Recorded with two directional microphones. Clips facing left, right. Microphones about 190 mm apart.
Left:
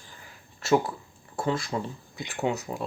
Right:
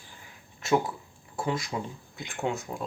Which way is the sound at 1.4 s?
10° right (ahead or behind).